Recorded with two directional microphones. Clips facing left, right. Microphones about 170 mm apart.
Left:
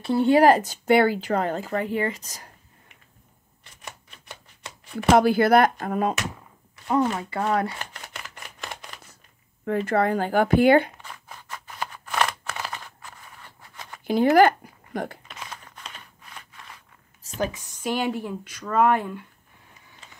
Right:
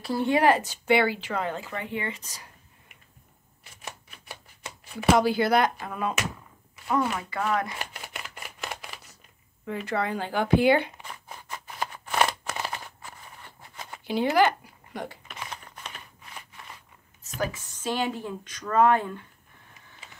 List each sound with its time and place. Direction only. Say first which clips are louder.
0.0 s speech: left 5 dB; 25° left (ahead or behind); by 2.5 s 45° left (ahead or behind)
5.1 s speech: left 5 dB; 50° left (ahead or behind)
6.9 s speech: left 4 dB; 30° left (ahead or behind)
7.9 s a sound: right 1 dB; 5° right (ahead or behind)
9.7 s speech: left 7 dB; 50° left (ahead or behind)
11.6 s scissors: even; 10° right (ahead or behind)
14.0 s speech: left 5 dB; 45° left (ahead or behind)
15.5 s computer keyboard: right 1 dB; 10° right (ahead or behind)
17.2 s a sound: left 3 dB; 30° left (ahead or behind)
17.5 s speech: left 2 dB; 15° left (ahead or behind)